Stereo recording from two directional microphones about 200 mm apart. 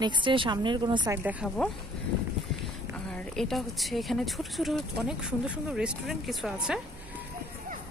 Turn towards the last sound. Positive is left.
turn(degrees=-5)  # may be behind; listen again after turning